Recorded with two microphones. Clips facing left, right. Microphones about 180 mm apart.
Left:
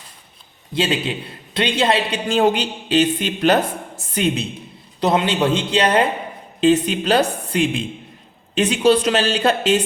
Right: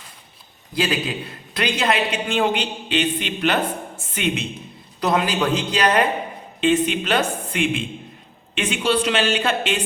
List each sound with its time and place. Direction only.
0.7 s a man's voice: 25° left (ahead or behind)